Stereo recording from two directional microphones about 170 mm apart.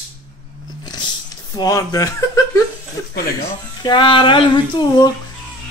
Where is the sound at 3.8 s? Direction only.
30° left (ahead or behind).